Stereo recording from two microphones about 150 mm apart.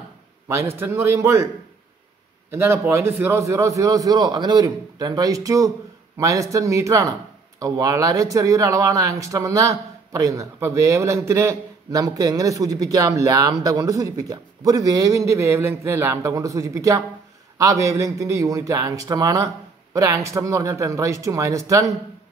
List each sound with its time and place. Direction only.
0.7 s speech: 15° right (ahead or behind)
2.5 s speech: 15° right (ahead or behind)